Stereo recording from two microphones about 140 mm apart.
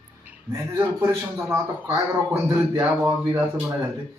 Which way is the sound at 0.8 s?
15° right (ahead or behind).